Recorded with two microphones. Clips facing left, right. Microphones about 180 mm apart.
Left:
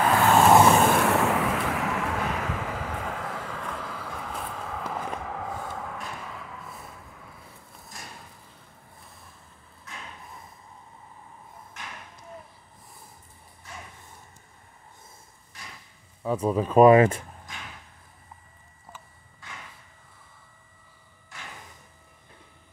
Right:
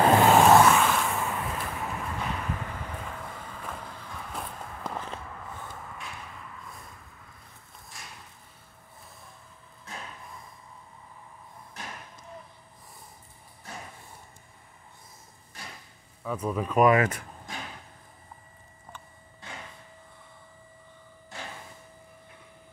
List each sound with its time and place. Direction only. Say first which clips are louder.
0.0 s vehicle: right 2 dB; 20° right (ahead or behind)
0.7 s vehicle: left 3 dB; 40° left (ahead or behind)
0.9 s a sound: left 7 dB; 75° left (ahead or behind)
16.3 s speech: left 5 dB; 30° left (ahead or behind)